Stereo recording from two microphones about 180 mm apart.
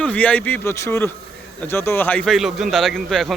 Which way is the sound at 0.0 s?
10° left (ahead or behind).